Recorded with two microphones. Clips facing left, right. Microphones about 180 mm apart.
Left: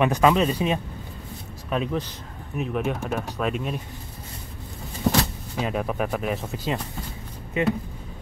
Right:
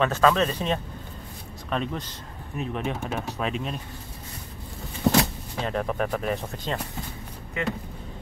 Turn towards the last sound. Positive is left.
turn(degrees=20)  # may be behind; listen again after turning